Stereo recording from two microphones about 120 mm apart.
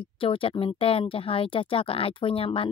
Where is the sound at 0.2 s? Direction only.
50° left (ahead or behind).